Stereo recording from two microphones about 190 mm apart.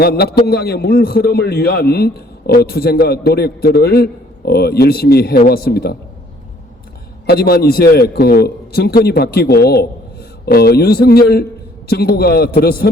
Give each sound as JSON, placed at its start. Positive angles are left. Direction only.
{"t": 0.0, "sound": "a man's voice", "side_deg": 55}
{"t": 7.3, "sound": "a man's voice", "side_deg": 55}